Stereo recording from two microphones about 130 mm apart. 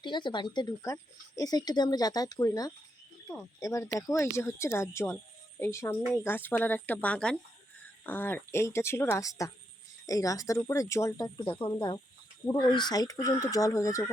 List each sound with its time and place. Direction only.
0.0 s speech: 35° left (ahead or behind)
11.2 s speech: 35° left (ahead or behind)